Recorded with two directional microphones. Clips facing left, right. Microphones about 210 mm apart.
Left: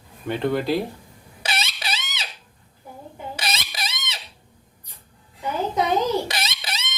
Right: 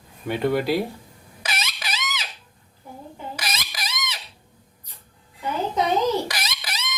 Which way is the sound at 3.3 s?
25° left (ahead or behind).